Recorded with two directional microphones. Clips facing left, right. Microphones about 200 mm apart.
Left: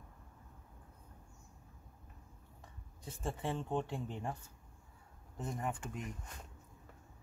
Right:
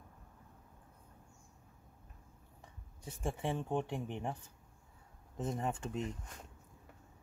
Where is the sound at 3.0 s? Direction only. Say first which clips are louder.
Right 2 dB; 10° right (ahead or behind).